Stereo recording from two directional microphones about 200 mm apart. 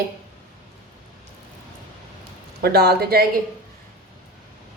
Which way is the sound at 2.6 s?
55° right (ahead or behind).